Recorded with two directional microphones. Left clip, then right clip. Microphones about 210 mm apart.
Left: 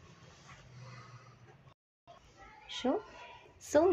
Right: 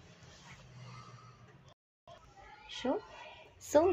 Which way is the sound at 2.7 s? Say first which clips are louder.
Left 2 dB; 15° left (ahead or behind).